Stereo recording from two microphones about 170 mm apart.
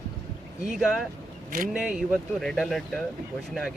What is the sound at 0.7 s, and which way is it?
A man's voice, centre (ahead or behind).